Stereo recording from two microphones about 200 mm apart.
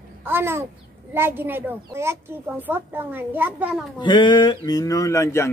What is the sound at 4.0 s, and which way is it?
Speech, 25° left (ahead or behind).